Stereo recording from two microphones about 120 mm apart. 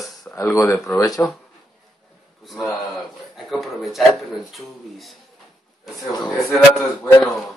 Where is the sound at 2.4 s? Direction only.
Centre (ahead or behind).